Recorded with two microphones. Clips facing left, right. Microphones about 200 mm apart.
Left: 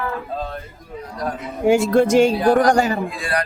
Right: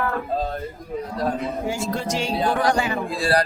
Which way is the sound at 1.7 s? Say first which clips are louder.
Left 16 dB; 65° left (ahead or behind).